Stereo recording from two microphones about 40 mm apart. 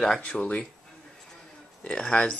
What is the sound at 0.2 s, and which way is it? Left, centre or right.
Speech, left.